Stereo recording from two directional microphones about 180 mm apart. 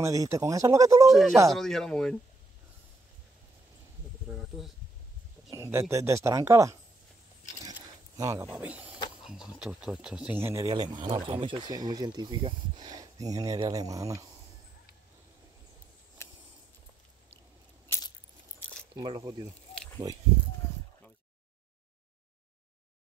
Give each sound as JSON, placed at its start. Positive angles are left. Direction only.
{"t": 0.0, "sound": "speech", "side_deg": -20}
{"t": 1.0, "sound": "speech", "side_deg": 0}
{"t": 4.3, "sound": "snake", "side_deg": -5}
{"t": 5.5, "sound": "speech", "side_deg": -15}
{"t": 8.2, "sound": "speech", "side_deg": -20}
{"t": 8.5, "sound": "speech", "side_deg": -10}
{"t": 10.7, "sound": "speech", "side_deg": -25}
{"t": 18.9, "sound": "speech", "side_deg": -25}